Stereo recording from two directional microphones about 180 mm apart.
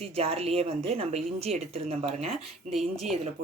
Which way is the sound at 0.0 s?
35° right (ahead or behind).